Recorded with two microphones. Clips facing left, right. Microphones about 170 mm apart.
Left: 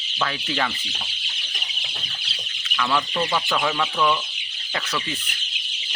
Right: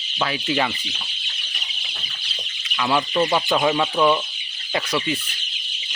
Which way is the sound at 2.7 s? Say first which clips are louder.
Right 3 dB; 20° right (ahead or behind).